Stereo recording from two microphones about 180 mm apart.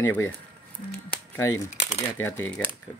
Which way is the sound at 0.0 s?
15° left (ahead or behind).